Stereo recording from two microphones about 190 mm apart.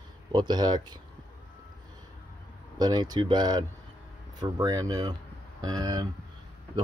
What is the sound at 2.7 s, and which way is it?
Speech, 20° right (ahead or behind).